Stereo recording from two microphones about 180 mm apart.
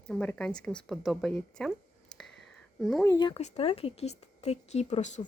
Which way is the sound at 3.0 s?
15° left (ahead or behind).